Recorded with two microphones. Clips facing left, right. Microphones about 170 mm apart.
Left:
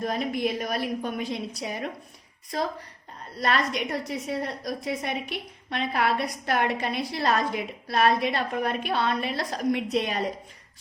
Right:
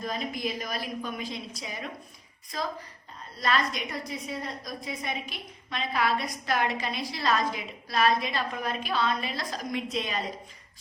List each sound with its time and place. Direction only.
0.0 s a woman's voice: 60° left (ahead or behind)
3.3 s a woman's voice: 65° left (ahead or behind)